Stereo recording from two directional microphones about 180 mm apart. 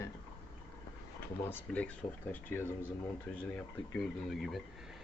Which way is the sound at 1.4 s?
10° left (ahead or behind).